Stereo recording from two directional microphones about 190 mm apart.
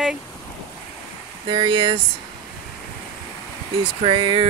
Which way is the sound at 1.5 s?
25° right (ahead or behind).